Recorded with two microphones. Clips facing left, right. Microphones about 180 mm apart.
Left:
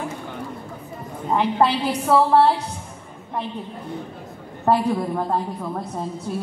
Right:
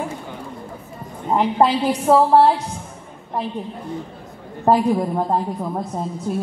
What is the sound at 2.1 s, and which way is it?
Speech, 25° right (ahead or behind).